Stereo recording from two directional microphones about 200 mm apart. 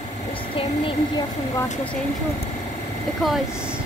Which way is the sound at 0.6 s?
25° left (ahead or behind).